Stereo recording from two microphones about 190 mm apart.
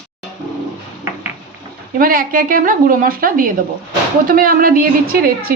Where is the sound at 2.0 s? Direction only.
50° right (ahead or behind).